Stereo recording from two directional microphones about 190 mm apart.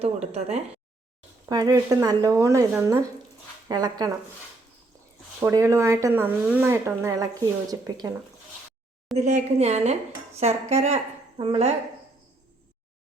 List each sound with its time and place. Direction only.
0.0 s a woman's voice: 35° right (ahead or behind)
1.5 s speech: 20° right (ahead or behind)
3.7 s speech: 20° right (ahead or behind)
5.4 s speech: 15° right (ahead or behind)
9.1 s a woman's voice: 40° right (ahead or behind)